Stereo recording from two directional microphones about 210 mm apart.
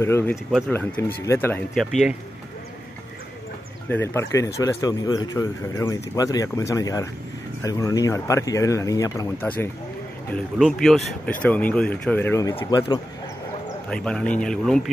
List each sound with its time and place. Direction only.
0.0 s speech: 10° left (ahead or behind)
0.5 s speech: centre (ahead or behind)
0.7 s speech: 10° left (ahead or behind)
3.9 s speech: 10° left (ahead or behind)
10.3 s speech: centre (ahead or behind); by 13.0 s 20° left (ahead or behind)
13.8 s speech: 5° left (ahead or behind)